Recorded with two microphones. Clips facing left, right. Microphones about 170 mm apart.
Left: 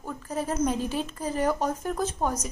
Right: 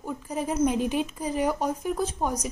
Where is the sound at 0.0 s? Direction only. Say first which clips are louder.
Right 1 dB; 15° right (ahead or behind).